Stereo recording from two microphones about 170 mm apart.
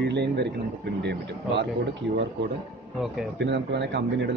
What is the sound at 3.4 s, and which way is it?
Speech, 90° right.